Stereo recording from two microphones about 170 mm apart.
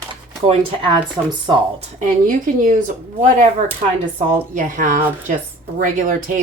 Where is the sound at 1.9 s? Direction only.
50° right (ahead or behind).